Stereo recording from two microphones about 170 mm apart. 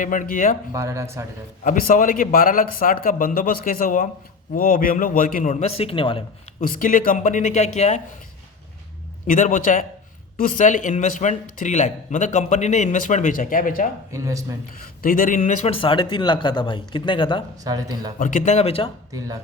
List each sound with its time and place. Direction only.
0.0 s a man's voice: 50° left (ahead or behind)
0.7 s speech: 15° right (ahead or behind)
1.6 s a man's voice: 50° left (ahead or behind); by 6.2 s 30° left (ahead or behind)
6.6 s a man's voice: 55° left (ahead or behind)
9.2 s a man's voice: 50° left (ahead or behind)
14.1 s speech: 20° right (ahead or behind)
15.0 s speech: 55° left (ahead or behind); by 17.4 s 30° left (ahead or behind)
17.6 s speech: 20° right (ahead or behind)
18.2 s a man's voice: 50° left (ahead or behind); by 18.9 s 35° left (ahead or behind)